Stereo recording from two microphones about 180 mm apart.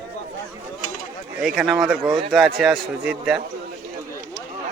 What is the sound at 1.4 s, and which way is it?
Speech, centre (ahead or behind).